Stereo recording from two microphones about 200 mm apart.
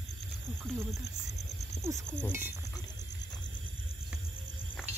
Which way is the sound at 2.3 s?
10° right (ahead or behind).